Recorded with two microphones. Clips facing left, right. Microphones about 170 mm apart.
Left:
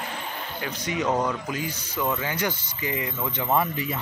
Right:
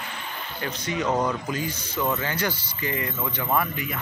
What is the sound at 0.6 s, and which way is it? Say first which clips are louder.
Speech: even; 15° left (ahead or behind).